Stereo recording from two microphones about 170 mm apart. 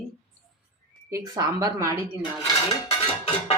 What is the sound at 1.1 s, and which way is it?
Speech, 20° right (ahead or behind).